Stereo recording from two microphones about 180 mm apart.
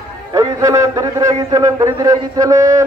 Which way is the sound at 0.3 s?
20° right (ahead or behind).